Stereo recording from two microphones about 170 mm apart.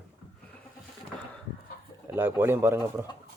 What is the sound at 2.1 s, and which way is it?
Speech, 15° right (ahead or behind).